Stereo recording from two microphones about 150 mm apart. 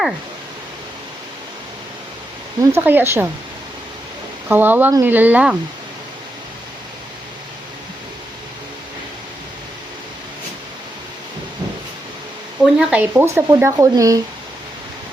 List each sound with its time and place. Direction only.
2.6 s speech: 15° right (ahead or behind)
4.4 s speech: 15° right (ahead or behind)
12.7 s speech: 5° right (ahead or behind)